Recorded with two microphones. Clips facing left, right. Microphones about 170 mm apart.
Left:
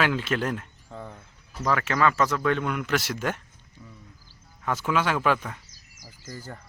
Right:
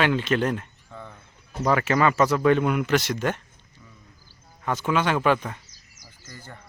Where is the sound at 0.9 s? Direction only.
35° left (ahead or behind).